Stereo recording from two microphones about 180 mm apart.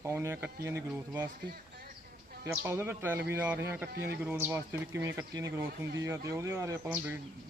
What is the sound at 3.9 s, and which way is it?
Speech, 65° right (ahead or behind).